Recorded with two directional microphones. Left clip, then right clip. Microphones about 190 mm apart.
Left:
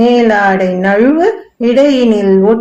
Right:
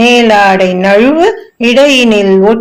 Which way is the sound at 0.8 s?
40° right (ahead or behind).